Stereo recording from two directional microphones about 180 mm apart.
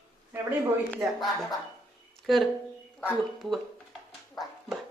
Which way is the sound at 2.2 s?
Centre (ahead or behind).